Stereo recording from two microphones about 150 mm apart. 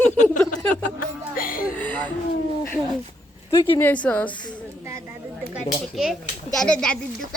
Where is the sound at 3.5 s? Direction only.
20° left (ahead or behind).